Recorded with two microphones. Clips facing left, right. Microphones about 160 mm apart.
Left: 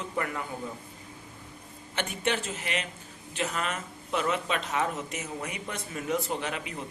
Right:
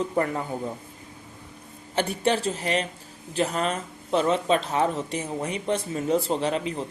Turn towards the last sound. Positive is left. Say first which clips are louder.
# right 8 dB
turn(degrees=-30)  # may be behind; listen again after turning